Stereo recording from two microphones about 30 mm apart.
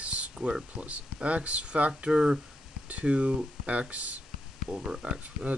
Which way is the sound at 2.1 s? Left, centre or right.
Right.